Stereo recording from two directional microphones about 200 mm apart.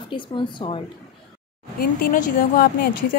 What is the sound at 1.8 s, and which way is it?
Speech, 45° left (ahead or behind).